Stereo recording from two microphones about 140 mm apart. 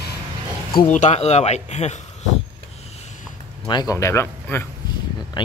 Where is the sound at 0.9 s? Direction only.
55° left (ahead or behind).